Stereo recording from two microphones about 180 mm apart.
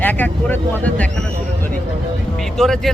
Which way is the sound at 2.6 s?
Centre (ahead or behind).